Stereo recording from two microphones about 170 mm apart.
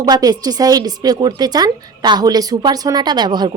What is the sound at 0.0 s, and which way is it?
A woman's voice, 20° right (ahead or behind).